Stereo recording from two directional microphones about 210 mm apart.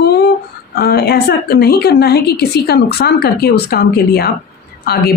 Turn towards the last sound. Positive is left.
turn(degrees=50)  # may be behind; listen again after turning